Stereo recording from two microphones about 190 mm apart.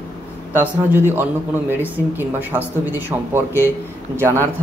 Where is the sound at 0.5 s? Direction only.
10° right (ahead or behind).